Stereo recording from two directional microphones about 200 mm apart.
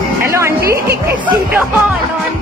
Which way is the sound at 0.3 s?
15° right (ahead or behind).